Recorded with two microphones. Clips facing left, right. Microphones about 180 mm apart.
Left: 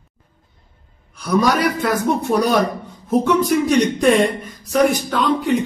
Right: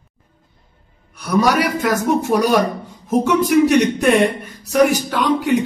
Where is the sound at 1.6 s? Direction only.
10° right (ahead or behind).